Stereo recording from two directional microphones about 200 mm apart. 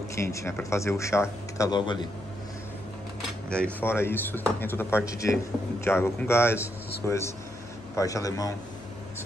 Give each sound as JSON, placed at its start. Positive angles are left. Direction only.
{"t": 0.1, "sound": "speech", "side_deg": 15}
{"t": 3.2, "sound": "speech", "side_deg": 5}